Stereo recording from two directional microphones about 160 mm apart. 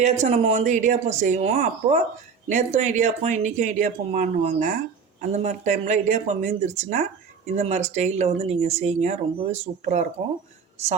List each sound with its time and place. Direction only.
0.0 s speech: 45° right (ahead or behind)